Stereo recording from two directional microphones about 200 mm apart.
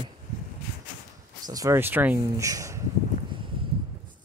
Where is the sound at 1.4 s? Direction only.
15° right (ahead or behind).